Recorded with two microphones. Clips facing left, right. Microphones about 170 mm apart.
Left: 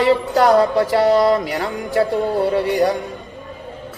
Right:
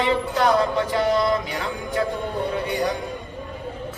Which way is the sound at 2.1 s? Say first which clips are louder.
Left 8 dB; 85° left.